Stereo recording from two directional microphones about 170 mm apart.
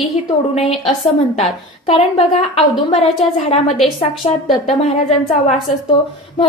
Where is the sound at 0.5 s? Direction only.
35° left (ahead or behind).